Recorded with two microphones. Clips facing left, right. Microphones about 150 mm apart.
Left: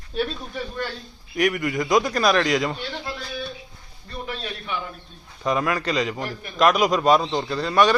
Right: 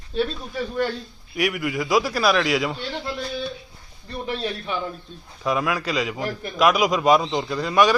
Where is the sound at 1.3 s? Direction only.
5° right (ahead or behind).